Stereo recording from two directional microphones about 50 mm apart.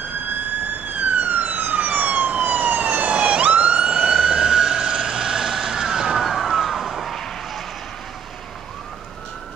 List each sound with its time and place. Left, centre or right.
1.2 s emergency vehicle: right; by 7.6 s centre